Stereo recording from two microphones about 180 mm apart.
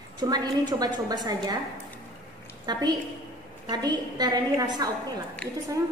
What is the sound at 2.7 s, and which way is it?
A woman's voice, 25° right (ahead or behind).